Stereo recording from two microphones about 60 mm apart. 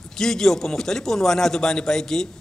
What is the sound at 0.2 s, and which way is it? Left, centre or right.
A man's voice, centre.